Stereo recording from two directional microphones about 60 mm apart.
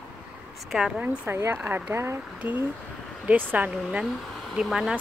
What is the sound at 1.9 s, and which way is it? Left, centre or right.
Speech, right.